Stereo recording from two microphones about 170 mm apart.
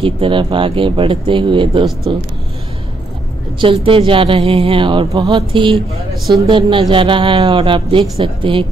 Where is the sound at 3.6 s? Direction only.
30° right (ahead or behind).